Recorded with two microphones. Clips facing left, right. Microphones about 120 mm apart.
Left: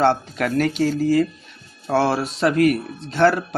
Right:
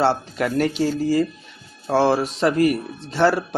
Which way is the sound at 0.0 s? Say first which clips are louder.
Left 1 dB; 5° right (ahead or behind).